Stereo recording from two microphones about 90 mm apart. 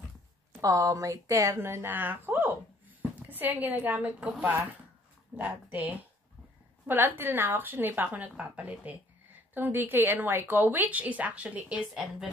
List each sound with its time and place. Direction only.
0.6 s a woman's voice: 40° right (ahead or behind); by 12.1 s 15° right (ahead or behind)